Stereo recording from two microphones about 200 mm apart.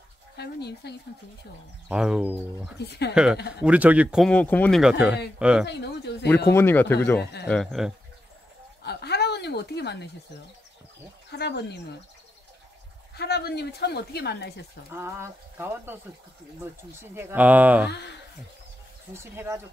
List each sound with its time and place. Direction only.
0.4 s speech: 55° left (ahead or behind)
1.9 s a man's voice: 5° right (ahead or behind)
2.9 s speech: 55° left (ahead or behind)
3.6 s a man's voice: 5° right (ahead or behind)
5.7 s speech: 55° left (ahead or behind)
6.5 s a man's voice: 10° left (ahead or behind)
8.8 s a sound: 55° left (ahead or behind)
11.3 s speech: 55° left (ahead or behind)
13.1 s speech: 55° left (ahead or behind)
14.9 s speech: 15° right (ahead or behind)
19.1 s speech: 10° right (ahead or behind)